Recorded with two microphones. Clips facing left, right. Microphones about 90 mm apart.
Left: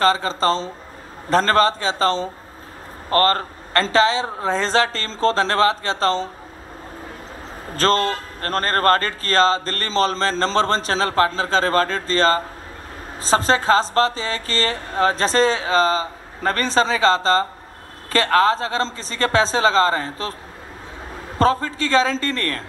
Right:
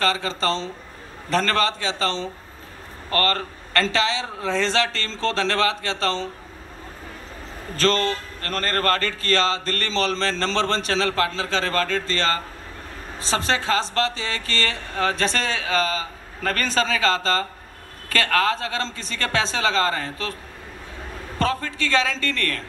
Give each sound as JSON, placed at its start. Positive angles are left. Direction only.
{"t": 0.0, "sound": "a man's voice", "side_deg": 35}
{"t": 7.7, "sound": "a man's voice", "side_deg": 40}
{"t": 21.4, "sound": "a man's voice", "side_deg": 35}